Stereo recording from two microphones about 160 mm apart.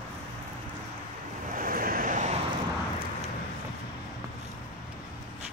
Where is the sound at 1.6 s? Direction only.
60° right (ahead or behind).